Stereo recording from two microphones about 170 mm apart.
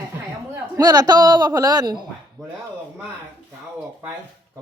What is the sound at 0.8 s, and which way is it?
A man's voice, 25° right (ahead or behind).